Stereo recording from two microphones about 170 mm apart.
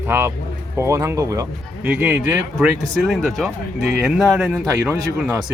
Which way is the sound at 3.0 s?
Centre (ahead or behind).